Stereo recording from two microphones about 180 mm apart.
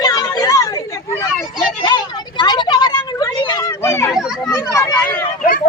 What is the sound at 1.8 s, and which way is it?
Vehicle, 25° left (ahead or behind).